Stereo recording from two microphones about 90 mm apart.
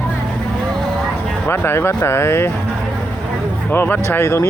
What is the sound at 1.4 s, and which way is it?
Speech, 25° left (ahead or behind).